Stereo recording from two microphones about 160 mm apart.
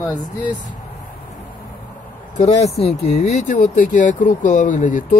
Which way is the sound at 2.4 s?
45° left (ahead or behind).